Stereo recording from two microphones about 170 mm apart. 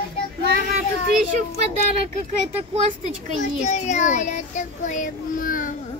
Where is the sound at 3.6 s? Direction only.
45° left (ahead or behind).